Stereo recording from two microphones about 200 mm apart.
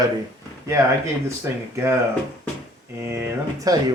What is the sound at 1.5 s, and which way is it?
Speech, 10° right (ahead or behind).